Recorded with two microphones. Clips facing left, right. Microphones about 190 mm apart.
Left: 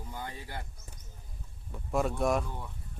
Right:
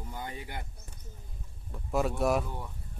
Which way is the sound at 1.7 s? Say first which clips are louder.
Even; centre (ahead or behind).